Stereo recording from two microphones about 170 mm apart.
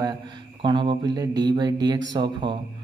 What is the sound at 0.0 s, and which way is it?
Speech, 25° right (ahead or behind).